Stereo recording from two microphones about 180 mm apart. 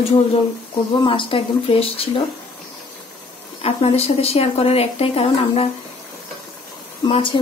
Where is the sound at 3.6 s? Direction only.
35° left (ahead or behind).